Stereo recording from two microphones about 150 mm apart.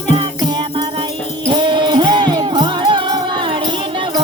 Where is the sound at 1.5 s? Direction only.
30° right (ahead or behind).